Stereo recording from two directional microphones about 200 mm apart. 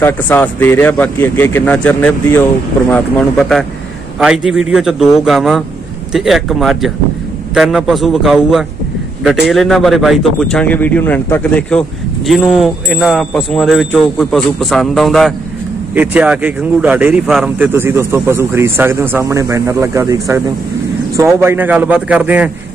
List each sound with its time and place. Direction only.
0.0 s speech: 10° left (ahead or behind); by 22.5 s 5° right (ahead or behind)